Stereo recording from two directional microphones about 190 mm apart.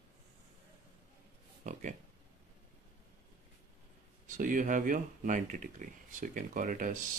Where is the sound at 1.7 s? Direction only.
40° right (ahead or behind).